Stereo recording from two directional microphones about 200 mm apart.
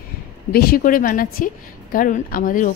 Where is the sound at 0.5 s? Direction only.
50° left (ahead or behind).